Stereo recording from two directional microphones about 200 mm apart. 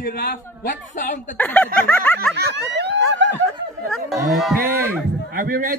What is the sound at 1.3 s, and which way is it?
A man's voice, 10° left (ahead or behind).